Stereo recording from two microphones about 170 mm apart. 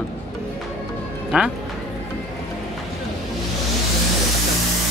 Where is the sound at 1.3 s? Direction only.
5° right (ahead or behind).